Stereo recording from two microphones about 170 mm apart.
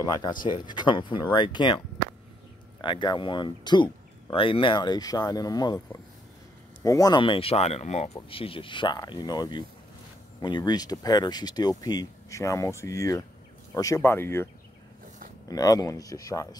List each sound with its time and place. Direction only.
0.0 s speech: 20° left (ahead or behind)
2.8 s speech: 25° left (ahead or behind)